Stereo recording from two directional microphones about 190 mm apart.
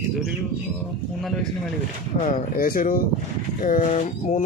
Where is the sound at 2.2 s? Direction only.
45° left (ahead or behind).